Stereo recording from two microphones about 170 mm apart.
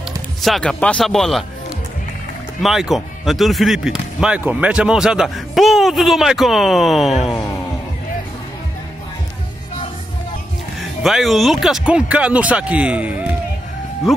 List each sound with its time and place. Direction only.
0.4 s speech: centre (ahead or behind)
2.6 s speech: centre (ahead or behind)
10.8 s speech: centre (ahead or behind)